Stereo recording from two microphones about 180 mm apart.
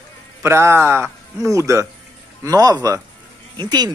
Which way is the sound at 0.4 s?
15° right (ahead or behind).